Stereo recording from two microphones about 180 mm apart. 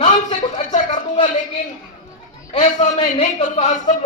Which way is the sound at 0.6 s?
45° left (ahead or behind).